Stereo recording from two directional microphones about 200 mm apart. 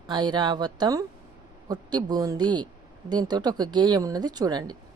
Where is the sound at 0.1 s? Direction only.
20° right (ahead or behind).